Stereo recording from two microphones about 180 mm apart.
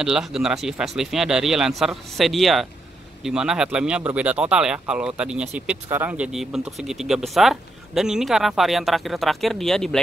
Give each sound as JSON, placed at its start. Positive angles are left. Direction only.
{"t": 0.0, "sound": "speech", "side_deg": -5}